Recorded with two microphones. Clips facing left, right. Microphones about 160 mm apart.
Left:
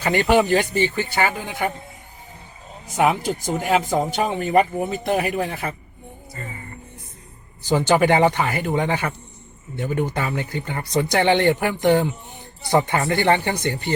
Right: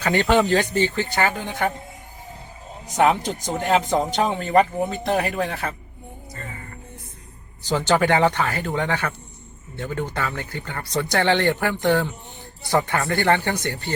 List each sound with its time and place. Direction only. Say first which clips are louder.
0.0 s speech: left 1 dB; 10° left (ahead or behind)
3.0 s speech: even; 5° left (ahead or behind)
7.7 s speech: left 2 dB; 15° left (ahead or behind)